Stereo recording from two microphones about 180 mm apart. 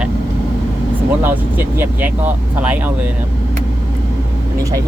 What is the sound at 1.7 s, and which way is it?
Speech, 10° right (ahead or behind).